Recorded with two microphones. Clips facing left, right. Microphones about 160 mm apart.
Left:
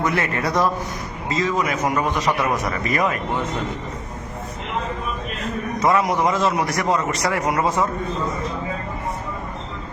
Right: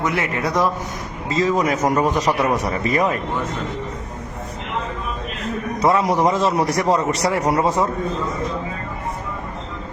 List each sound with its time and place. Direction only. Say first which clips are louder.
0.0 s a man's voice: even; 15° right (ahead or behind)
1.3 s a man's voice: right 3 dB; 35° right (ahead or behind)
5.8 s a man's voice: right 2 dB; 30° right (ahead or behind)